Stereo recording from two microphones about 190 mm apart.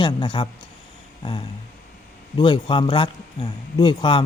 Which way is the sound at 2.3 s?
25° left (ahead or behind).